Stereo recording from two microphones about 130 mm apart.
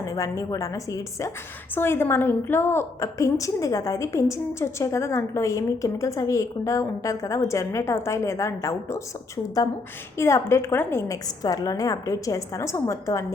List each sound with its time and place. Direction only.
0.0 s a woman's voice: 25° left (ahead or behind)